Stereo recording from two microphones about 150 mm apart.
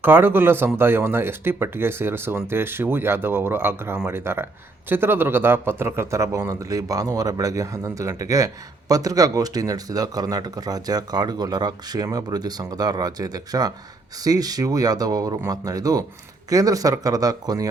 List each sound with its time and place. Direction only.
0.0 s speech: 15° right (ahead or behind)